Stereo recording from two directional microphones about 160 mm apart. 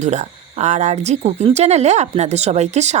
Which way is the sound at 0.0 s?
45° right (ahead or behind).